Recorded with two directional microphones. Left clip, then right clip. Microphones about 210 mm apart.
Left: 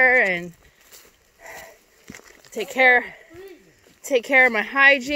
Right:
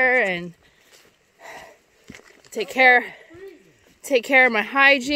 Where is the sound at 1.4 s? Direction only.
20° right (ahead or behind).